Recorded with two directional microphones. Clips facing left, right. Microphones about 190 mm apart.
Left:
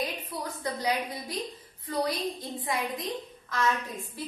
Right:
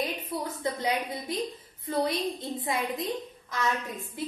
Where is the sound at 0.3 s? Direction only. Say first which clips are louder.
Right 3 dB; 25° right (ahead or behind).